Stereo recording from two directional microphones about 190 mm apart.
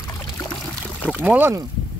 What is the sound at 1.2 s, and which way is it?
Speech, 10° right (ahead or behind).